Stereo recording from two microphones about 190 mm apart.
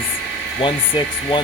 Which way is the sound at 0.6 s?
25° left (ahead or behind).